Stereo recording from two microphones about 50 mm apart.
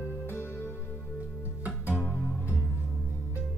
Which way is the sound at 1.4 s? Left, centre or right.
Right.